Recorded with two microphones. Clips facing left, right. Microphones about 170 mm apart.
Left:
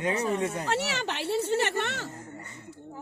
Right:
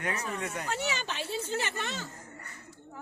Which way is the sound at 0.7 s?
75° left (ahead or behind).